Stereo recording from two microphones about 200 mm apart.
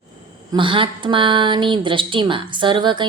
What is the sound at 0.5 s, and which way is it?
Speech, 25° right (ahead or behind).